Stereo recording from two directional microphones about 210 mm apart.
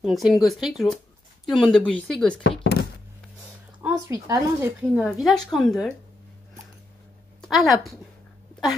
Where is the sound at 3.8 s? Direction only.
15° right (ahead or behind).